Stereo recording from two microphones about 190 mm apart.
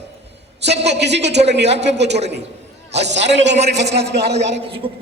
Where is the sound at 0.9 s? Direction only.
65° right (ahead or behind).